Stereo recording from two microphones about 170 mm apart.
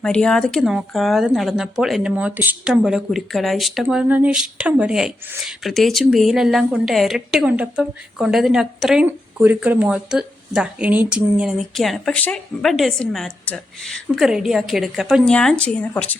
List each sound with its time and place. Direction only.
0.0 s speech: 5° left (ahead or behind)